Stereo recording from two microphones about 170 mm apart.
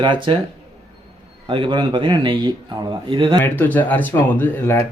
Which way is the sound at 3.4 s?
10° left (ahead or behind).